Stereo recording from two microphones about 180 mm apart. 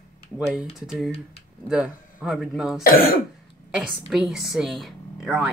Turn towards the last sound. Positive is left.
turn(degrees=-5)  # may be behind; listen again after turning